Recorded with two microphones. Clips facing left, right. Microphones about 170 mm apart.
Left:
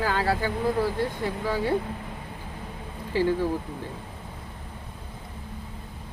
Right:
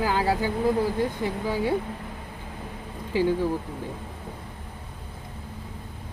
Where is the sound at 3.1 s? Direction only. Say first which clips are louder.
Right 1 dB; 15° right (ahead or behind).